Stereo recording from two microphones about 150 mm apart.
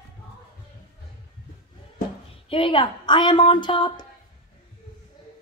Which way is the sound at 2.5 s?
35° left (ahead or behind).